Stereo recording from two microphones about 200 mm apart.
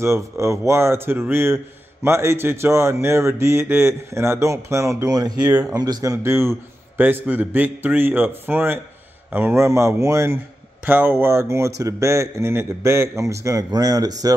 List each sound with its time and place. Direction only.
0.0 s speech: 15° right (ahead or behind)
5.5 s speech: 5° right (ahead or behind)
5.8 s speech: 20° right (ahead or behind)